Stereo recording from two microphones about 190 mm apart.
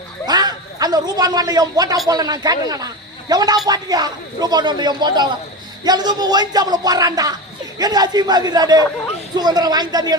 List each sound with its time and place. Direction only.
0.3 s a man's voice: 20° right (ahead or behind)